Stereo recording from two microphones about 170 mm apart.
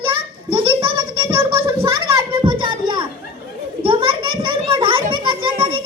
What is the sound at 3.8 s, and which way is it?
Children playing, 30° right (ahead or behind).